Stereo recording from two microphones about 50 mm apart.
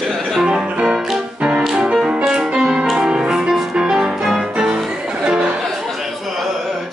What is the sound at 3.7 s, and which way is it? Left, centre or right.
Music, centre.